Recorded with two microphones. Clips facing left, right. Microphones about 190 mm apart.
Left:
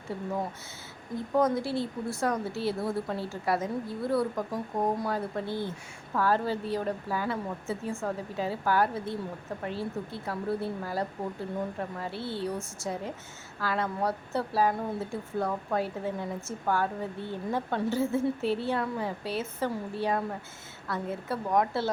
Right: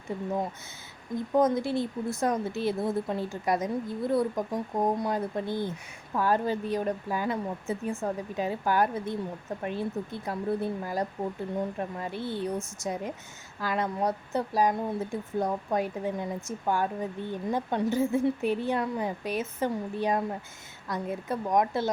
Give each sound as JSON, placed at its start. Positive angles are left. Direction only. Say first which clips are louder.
{"t": 1.3, "sound": "speech", "louder": "right 2 dB", "side_deg": -20}